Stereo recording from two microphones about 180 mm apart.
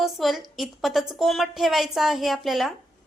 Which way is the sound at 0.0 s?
Centre (ahead or behind).